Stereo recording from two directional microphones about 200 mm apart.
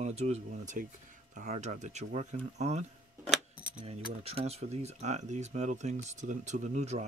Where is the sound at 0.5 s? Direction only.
45° right (ahead or behind).